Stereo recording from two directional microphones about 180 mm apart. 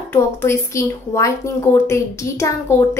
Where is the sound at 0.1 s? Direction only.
15° left (ahead or behind).